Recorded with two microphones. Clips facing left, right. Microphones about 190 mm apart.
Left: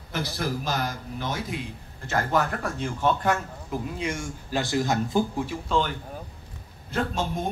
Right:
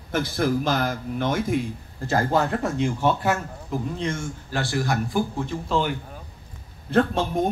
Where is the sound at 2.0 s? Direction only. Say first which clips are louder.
Right 3 dB; 35° right (ahead or behind); by 3.4 s 10° right (ahead or behind).